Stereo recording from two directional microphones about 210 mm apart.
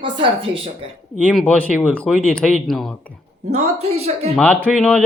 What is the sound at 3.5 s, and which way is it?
Speech, 30° right (ahead or behind).